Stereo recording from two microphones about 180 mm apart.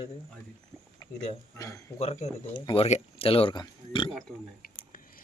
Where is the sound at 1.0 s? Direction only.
20° left (ahead or behind).